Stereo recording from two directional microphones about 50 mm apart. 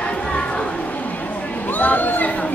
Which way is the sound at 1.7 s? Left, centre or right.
Left.